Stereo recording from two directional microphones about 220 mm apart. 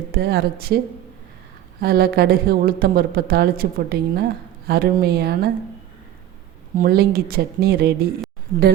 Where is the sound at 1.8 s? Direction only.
45° right (ahead or behind).